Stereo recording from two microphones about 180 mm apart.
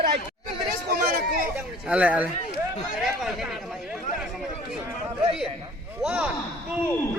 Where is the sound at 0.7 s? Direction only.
55° right (ahead or behind).